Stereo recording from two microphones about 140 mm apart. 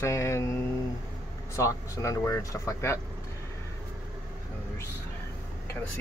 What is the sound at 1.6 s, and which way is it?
Speech, 20° left (ahead or behind).